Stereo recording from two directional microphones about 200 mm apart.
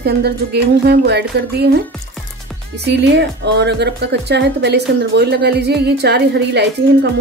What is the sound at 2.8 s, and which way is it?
Speech, 60° right (ahead or behind).